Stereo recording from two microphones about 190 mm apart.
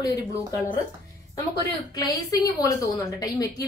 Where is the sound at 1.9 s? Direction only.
20° left (ahead or behind).